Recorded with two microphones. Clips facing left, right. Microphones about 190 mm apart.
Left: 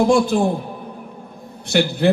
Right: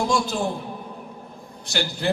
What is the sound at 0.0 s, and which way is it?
Speech, 55° left (ahead or behind).